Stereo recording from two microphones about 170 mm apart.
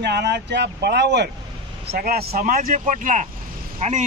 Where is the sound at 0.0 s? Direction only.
75° right (ahead or behind).